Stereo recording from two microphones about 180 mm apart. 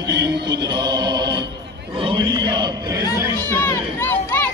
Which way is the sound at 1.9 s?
25° right (ahead or behind).